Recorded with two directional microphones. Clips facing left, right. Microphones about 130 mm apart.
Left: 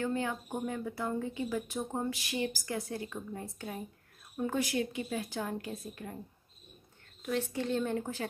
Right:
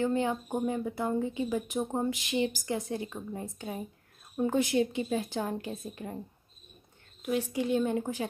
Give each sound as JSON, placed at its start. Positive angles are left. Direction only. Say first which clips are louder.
{"t": 0.0, "sound": "speech", "louder": "right 5 dB", "side_deg": -20}
{"t": 7.2, "sound": "a woman's voice", "louder": "right 3 dB", "side_deg": -15}